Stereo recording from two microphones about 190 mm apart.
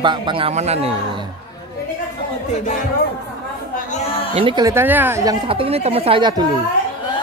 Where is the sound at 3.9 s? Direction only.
30° left (ahead or behind).